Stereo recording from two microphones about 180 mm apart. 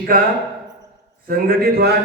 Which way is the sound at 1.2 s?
55° right (ahead or behind).